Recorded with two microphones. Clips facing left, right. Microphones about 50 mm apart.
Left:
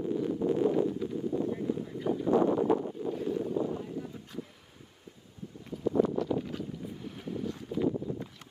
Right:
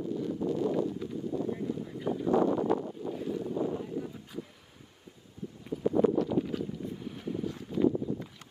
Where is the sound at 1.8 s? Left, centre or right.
Centre.